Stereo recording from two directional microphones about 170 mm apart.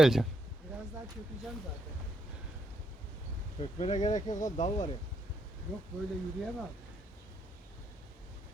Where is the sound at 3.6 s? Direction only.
40° left (ahead or behind).